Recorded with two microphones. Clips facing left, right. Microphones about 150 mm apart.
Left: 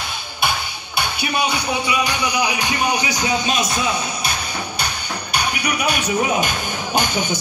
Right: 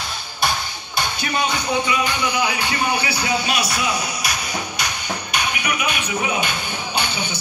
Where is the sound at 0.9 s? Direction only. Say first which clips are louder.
Left 1 dB; 10° left (ahead or behind); by 4.8 s 30° left (ahead or behind).